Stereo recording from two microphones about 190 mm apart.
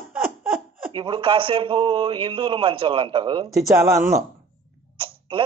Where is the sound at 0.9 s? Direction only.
25° right (ahead or behind).